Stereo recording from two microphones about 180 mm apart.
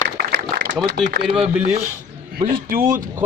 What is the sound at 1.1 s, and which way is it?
Speech, 60° right (ahead or behind).